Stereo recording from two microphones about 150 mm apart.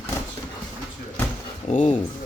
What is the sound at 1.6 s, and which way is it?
Speech, 50° left (ahead or behind).